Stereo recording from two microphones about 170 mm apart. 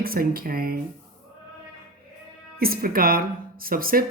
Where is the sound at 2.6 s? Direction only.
60° right (ahead or behind).